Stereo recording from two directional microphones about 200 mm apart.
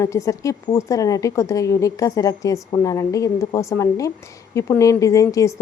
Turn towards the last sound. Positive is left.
turn(degrees=15)  # may be behind; listen again after turning